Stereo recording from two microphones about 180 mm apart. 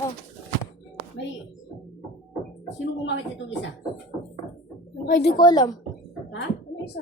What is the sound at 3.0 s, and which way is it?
Speech, 90° left.